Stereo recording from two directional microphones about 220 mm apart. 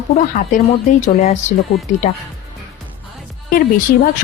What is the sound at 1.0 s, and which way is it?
Speech, 30° left (ahead or behind).